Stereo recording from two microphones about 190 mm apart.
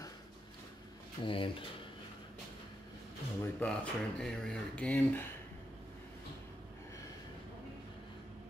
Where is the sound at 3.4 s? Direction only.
5° left (ahead or behind).